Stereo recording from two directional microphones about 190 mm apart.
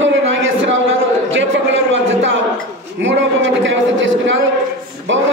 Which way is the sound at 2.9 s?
75° right (ahead or behind).